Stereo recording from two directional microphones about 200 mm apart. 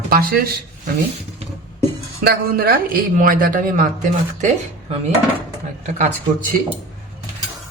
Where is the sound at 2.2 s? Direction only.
45° right (ahead or behind).